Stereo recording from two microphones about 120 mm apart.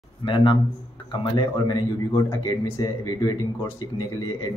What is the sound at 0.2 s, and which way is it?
Speech, 40° left (ahead or behind).